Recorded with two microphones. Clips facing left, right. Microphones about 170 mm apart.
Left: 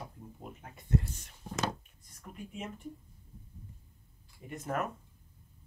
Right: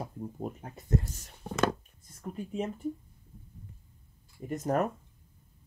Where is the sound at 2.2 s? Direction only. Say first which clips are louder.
Right 9 dB; 35° right (ahead or behind).